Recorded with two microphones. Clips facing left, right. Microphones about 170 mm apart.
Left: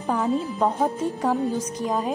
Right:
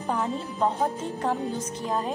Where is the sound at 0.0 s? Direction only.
Centre (ahead or behind).